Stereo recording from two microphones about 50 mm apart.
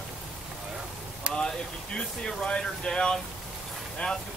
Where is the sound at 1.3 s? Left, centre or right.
Centre.